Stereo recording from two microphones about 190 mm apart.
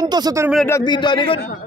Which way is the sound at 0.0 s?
20° right (ahead or behind).